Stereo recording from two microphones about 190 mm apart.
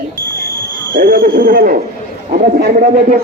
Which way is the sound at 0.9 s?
55° right (ahead or behind).